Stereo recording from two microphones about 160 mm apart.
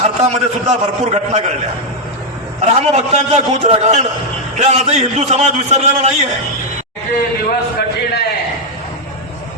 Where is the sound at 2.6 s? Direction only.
45° right (ahead or behind).